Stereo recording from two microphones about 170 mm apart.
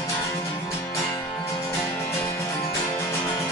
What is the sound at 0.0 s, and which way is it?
Music, 20° left (ahead or behind).